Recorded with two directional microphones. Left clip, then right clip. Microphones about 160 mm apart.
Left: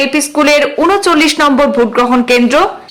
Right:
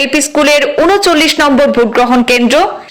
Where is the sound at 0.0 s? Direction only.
20° right (ahead or behind).